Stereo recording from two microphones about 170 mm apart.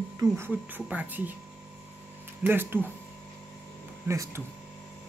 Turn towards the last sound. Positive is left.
turn(degrees=-15)  # may be behind; listen again after turning